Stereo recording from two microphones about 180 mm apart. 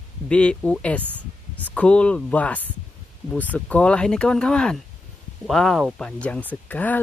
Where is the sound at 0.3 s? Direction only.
5° left (ahead or behind).